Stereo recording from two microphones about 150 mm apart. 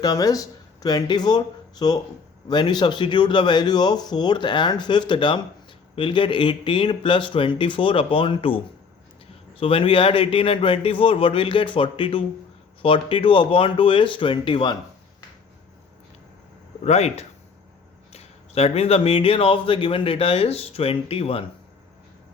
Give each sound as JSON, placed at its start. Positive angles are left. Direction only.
{"t": 0.0, "sound": "a man's voice", "side_deg": 25}
{"t": 9.6, "sound": "speech", "side_deg": 35}
{"t": 16.8, "sound": "speech", "side_deg": 45}